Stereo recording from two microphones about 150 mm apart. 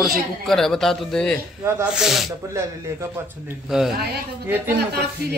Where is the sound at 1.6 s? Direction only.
20° right (ahead or behind).